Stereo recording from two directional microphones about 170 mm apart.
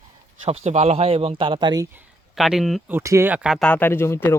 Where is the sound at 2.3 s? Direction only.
Centre (ahead or behind).